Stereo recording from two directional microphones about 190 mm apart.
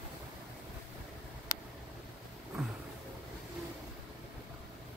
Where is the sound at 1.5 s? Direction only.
45° left (ahead or behind).